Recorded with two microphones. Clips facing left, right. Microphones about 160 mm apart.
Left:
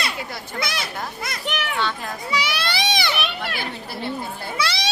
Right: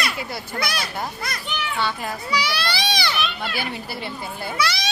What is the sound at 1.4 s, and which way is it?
Speech, 70° left (ahead or behind).